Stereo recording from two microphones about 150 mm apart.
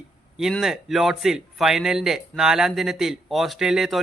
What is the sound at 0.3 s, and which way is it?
A man's voice, centre (ahead or behind).